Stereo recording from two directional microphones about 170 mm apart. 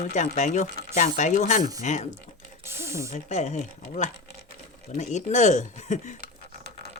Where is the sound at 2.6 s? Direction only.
15° right (ahead or behind).